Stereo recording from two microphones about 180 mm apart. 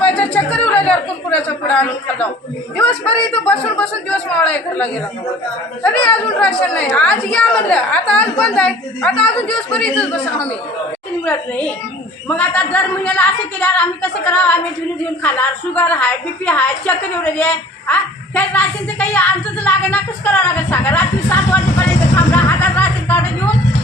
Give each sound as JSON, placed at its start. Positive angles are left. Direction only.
{"t": 0.0, "sound": "a sound", "side_deg": 10}
{"t": 2.7, "sound": "a woman's voice", "side_deg": 5}
{"t": 11.3, "sound": "a woman's voice", "side_deg": 5}
{"t": 22.1, "sound": "music", "side_deg": 10}